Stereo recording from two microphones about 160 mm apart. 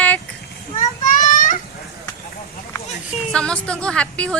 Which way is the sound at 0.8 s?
50° left (ahead or behind).